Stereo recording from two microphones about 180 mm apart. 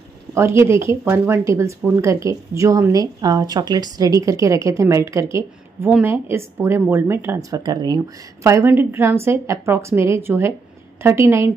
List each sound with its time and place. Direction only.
0.3 s speech: 15° right (ahead or behind)